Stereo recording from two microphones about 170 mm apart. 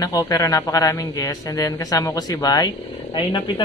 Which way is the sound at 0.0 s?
20° left (ahead or behind).